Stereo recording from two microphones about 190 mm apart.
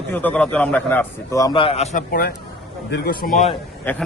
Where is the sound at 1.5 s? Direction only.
30° left (ahead or behind); by 3.4 s 45° left (ahead or behind).